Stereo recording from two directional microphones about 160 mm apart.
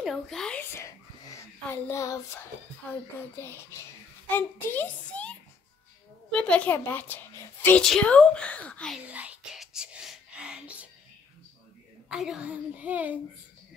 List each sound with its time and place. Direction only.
0.0 s speech: centre (ahead or behind)
0.7 s a woman's voice: 20° left (ahead or behind)
9.0 s whispering: 10° right (ahead or behind)
12.1 s a woman's voice: 5° right (ahead or behind)